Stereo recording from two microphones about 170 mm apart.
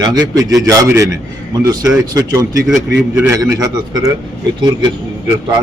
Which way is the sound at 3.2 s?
20° right (ahead or behind).